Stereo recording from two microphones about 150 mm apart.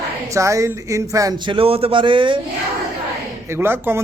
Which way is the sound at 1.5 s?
40° right (ahead or behind).